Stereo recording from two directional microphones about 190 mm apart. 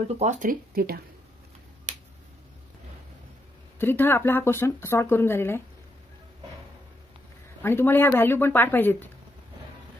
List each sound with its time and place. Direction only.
0.2 s speech: 40° right (ahead or behind)
3.7 s speech: 10° left (ahead or behind)
7.6 s speech: 10° left (ahead or behind)